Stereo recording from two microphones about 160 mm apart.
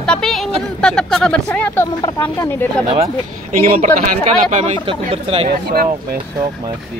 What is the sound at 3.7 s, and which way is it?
Speech, 60° right (ahead or behind).